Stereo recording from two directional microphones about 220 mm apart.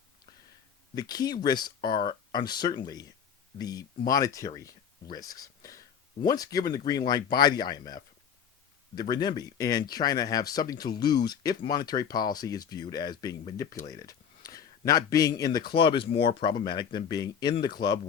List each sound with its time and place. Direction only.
0.9 s speech: 15° left (ahead or behind)